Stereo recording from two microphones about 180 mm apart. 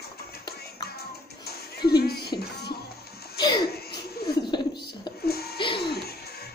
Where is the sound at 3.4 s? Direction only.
25° left (ahead or behind).